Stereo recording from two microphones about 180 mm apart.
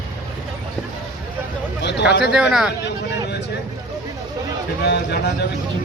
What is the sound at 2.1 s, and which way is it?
Speech, 65° left (ahead or behind).